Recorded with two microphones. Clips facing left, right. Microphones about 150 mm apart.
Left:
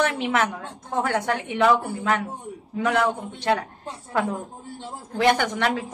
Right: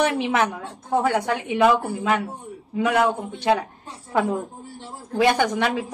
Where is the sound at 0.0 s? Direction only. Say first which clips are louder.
Right 2 dB; 15° right (ahead or behind).